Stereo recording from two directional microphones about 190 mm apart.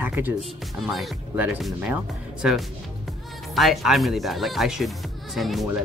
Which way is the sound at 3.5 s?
Centre (ahead or behind).